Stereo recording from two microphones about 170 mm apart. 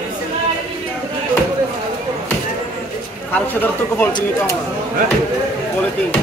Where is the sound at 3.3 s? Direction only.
10° left (ahead or behind).